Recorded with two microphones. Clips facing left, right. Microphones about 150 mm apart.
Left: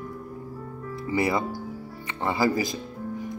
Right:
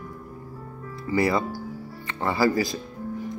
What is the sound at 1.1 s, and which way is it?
Speech, 20° left (ahead or behind).